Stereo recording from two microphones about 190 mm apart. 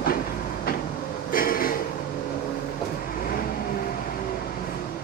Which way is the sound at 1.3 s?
50° left (ahead or behind).